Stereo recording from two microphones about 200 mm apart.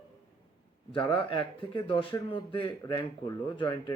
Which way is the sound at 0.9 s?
25° left (ahead or behind).